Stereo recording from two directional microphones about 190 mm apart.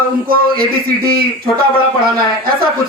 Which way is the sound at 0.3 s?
50° right (ahead or behind).